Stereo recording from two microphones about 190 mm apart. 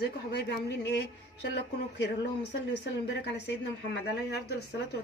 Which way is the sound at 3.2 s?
60° left (ahead or behind).